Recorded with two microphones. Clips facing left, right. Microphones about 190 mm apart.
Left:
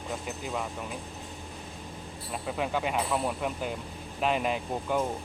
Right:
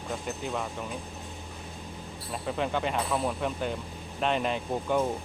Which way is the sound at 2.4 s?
5° left (ahead or behind).